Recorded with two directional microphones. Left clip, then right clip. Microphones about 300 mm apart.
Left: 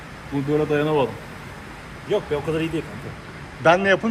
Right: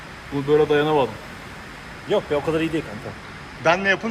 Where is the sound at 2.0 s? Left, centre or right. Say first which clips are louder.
Right 2 dB; right.